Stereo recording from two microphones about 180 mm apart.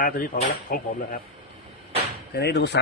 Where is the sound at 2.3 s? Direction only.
65° left (ahead or behind).